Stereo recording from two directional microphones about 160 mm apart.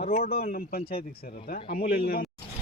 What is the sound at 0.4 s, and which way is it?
A man's voice, 60° left (ahead or behind).